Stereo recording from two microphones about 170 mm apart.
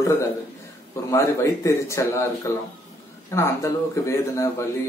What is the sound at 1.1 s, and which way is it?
Speech, 15° left (ahead or behind).